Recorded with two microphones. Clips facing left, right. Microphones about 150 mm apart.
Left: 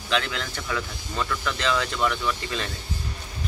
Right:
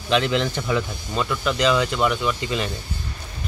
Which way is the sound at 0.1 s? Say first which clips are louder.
Right 7 dB; 20° right (ahead or behind).